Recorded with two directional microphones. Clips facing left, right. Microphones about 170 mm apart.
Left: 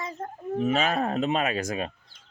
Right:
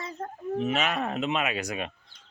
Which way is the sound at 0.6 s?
35° left (ahead or behind).